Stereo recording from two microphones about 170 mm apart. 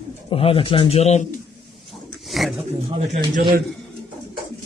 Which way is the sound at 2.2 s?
Centre (ahead or behind).